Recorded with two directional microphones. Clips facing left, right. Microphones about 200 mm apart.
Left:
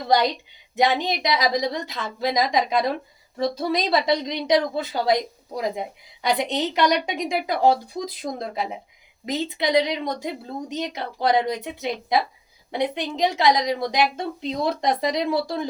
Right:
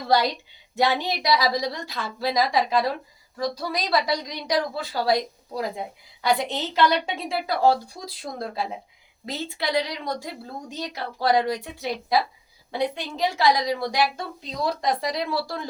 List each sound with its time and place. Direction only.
0.8 s a woman's voice: 20° left (ahead or behind)